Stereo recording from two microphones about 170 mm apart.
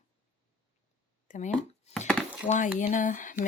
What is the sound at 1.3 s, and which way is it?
Speech, 50° left (ahead or behind).